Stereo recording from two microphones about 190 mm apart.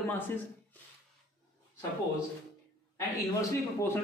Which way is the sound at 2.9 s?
15° left (ahead or behind).